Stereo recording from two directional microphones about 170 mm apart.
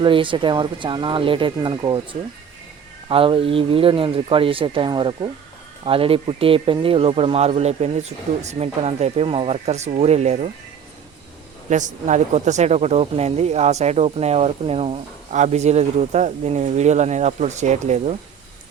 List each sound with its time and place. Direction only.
0.0 s speech: 30° right (ahead or behind)
11.7 s speech: 45° right (ahead or behind)